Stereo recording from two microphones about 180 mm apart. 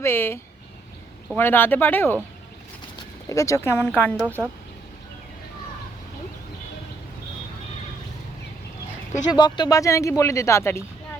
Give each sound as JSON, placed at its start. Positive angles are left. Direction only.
{"t": 0.0, "sound": "speech", "side_deg": 15}
{"t": 1.4, "sound": "speech", "side_deg": 10}
{"t": 3.2, "sound": "speech", "side_deg": 15}
{"t": 4.4, "sound": "speech", "side_deg": -10}
{"t": 9.3, "sound": "speech", "side_deg": 25}